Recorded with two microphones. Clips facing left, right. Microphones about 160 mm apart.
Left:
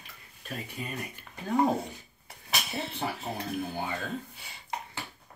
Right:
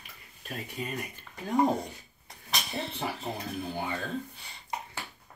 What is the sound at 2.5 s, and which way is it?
Speech, 5° left (ahead or behind).